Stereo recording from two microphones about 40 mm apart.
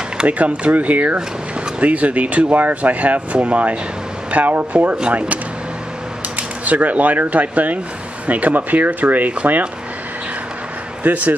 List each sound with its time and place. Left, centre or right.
0.3 s speech: right
6.3 s speech: right
11.0 s speech: right